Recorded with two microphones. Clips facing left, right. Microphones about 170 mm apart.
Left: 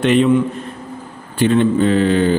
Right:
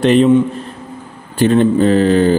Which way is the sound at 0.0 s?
35° right (ahead or behind).